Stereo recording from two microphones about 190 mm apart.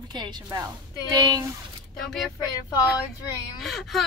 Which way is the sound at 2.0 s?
Centre (ahead or behind).